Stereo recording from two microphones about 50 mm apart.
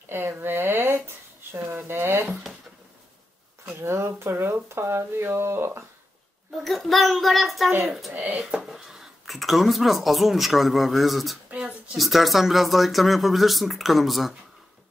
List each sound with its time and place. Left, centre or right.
0.1 s a sound: right
3.8 s speech: right
6.6 s speech: centre
8.1 s speech: right
8.4 s speech: centre
11.5 s a sound: right
12.0 s speech: centre